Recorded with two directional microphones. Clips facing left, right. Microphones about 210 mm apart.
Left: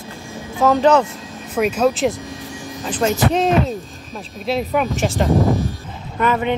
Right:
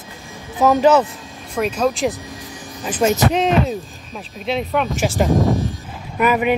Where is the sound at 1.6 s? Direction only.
5° left (ahead or behind).